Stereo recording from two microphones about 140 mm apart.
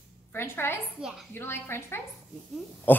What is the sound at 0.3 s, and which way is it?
A woman's voice, 15° left (ahead or behind).